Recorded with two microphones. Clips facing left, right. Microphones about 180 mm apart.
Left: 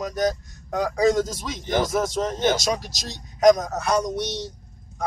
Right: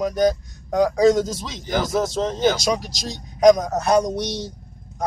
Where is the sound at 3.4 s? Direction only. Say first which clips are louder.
Right 2 dB; 15° right (ahead or behind).